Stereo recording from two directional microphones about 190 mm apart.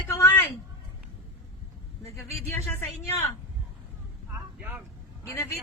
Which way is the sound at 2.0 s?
15° left (ahead or behind).